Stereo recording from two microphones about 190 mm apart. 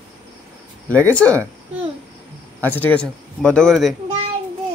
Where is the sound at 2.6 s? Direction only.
10° left (ahead or behind).